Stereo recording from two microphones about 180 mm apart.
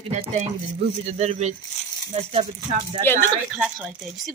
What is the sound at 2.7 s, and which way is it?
Speech, 35° right (ahead or behind).